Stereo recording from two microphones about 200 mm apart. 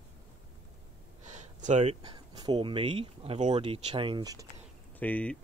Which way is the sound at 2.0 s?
20° right (ahead or behind).